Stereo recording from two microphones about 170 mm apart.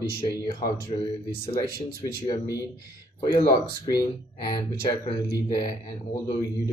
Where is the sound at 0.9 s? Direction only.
35° left (ahead or behind).